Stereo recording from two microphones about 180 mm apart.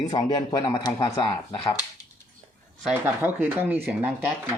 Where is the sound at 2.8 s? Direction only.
10° right (ahead or behind).